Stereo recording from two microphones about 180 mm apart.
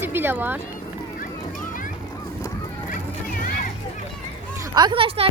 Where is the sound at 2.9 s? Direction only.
50° left (ahead or behind).